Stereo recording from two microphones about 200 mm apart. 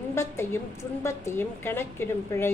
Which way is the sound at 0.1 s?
15° left (ahead or behind).